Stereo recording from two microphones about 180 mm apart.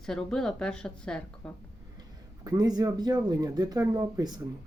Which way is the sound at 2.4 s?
20° right (ahead or behind).